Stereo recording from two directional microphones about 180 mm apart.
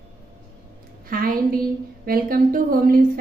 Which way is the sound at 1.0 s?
50° right (ahead or behind).